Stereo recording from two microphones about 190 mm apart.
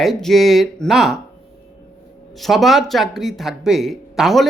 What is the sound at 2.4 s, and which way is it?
Speech, centre (ahead or behind).